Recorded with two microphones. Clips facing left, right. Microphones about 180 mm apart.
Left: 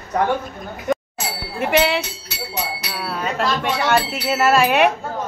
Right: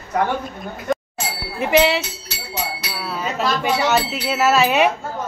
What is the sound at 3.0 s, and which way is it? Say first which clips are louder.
A woman's voice: left 1 dB; centre (ahead or behind).